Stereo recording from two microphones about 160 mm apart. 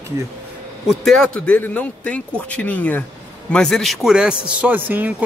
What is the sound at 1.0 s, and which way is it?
A man's voice, 5° left (ahead or behind).